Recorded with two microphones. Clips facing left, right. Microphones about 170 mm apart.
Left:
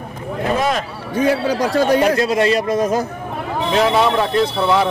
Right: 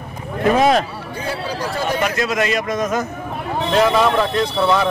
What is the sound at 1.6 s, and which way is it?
Speech, 40° left (ahead or behind).